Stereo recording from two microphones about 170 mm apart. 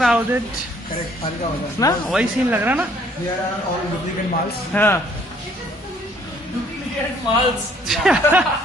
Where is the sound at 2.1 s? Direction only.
5° right (ahead or behind).